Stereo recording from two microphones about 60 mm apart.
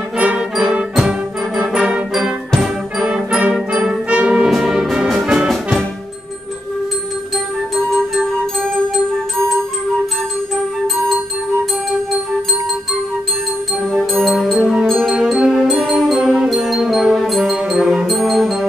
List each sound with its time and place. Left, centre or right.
0.2 s music: centre
2.5 s music: centre
3.5 s brass instrument: centre
4.5 s music: centre
14.1 s music: centre